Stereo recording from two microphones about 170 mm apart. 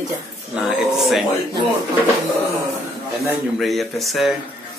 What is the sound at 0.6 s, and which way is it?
Speech, centre (ahead or behind).